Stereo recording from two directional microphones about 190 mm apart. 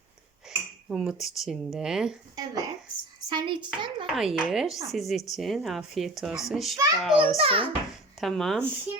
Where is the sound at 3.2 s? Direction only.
25° right (ahead or behind).